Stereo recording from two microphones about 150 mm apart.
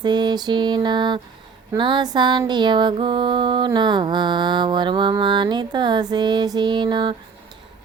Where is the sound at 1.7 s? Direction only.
30° right (ahead or behind).